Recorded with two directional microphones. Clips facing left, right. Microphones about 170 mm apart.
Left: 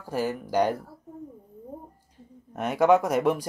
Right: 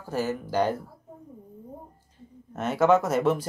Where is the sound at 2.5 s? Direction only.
10° left (ahead or behind).